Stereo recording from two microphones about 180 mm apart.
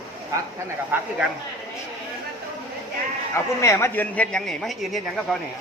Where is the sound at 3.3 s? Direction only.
15° left (ahead or behind).